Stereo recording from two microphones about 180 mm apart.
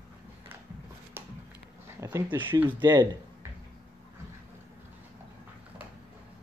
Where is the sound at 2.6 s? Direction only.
25° right (ahead or behind).